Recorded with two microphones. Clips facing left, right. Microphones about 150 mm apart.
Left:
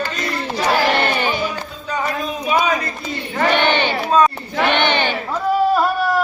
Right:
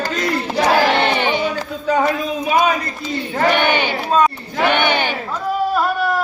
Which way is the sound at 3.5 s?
10° right (ahead or behind).